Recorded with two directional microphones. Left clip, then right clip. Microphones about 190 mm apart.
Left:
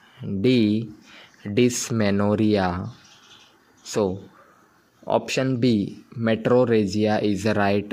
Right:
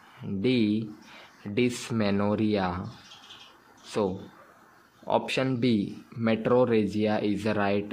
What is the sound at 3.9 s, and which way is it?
Speech, 35° left (ahead or behind).